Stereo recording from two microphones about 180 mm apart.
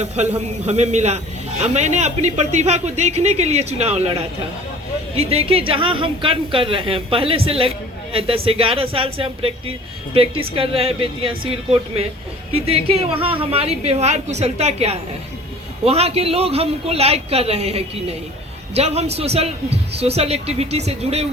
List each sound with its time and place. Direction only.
0.0 s a man's voice: 40° right (ahead or behind)
5.1 s a man's voice: 35° right (ahead or behind)